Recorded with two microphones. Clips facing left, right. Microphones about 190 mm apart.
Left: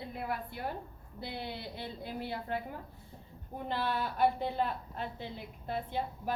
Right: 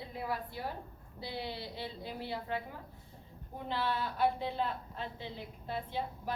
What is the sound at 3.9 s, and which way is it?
A woman's voice, 50° left (ahead or behind).